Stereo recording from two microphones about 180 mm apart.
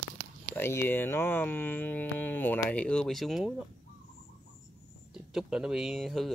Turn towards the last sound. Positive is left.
turn(degrees=0)  # may be behind; listen again after turning